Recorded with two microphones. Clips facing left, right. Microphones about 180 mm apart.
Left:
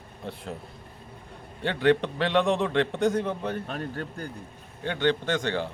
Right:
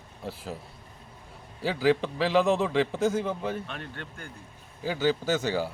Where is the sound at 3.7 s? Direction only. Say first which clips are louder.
Left 6 dB; 40° left (ahead or behind).